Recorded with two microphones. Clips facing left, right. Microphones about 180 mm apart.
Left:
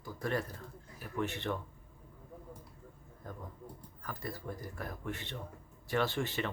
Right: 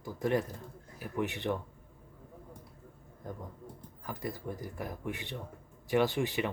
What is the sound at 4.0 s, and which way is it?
Speech, 20° right (ahead or behind).